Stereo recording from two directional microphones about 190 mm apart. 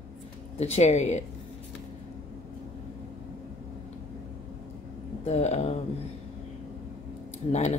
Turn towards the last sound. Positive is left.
turn(degrees=35)  # may be behind; listen again after turning